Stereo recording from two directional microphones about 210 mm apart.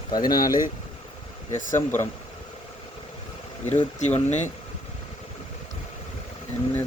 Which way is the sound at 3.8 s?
35° left (ahead or behind).